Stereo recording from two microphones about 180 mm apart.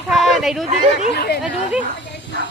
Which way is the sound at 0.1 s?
Centre (ahead or behind).